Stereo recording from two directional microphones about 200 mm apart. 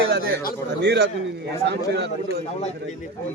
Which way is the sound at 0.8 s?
60° right (ahead or behind).